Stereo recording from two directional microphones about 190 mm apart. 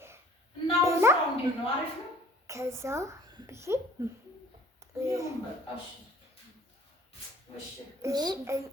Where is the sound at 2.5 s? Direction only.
15° right (ahead or behind).